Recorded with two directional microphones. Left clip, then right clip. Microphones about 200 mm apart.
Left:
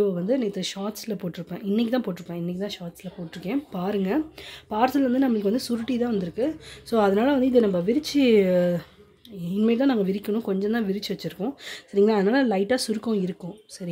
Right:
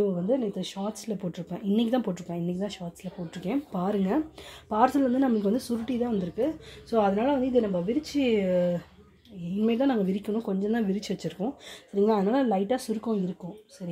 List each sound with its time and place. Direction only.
0.0 s speech: 20° left (ahead or behind)
6.9 s a woman's voice: 35° left (ahead or behind)
9.6 s speech: 20° left (ahead or behind)
10.7 s speech: 10° left (ahead or behind); by 13.2 s 25° left (ahead or behind)